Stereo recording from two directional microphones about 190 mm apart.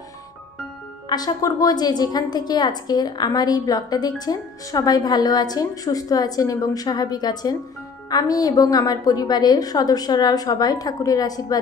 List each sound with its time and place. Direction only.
1.0 s a woman's voice: 20° left (ahead or behind)